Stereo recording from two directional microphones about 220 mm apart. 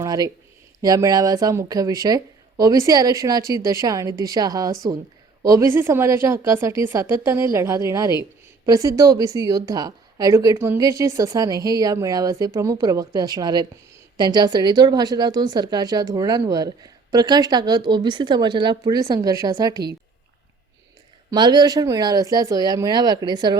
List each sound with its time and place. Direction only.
0.0 s a sound: 15° right (ahead or behind)
0.8 s a woman's voice: 15° right (ahead or behind)
21.2 s speech: 20° right (ahead or behind)